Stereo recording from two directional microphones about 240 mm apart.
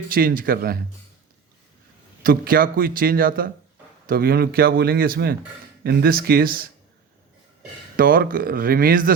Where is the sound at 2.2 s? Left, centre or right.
Right.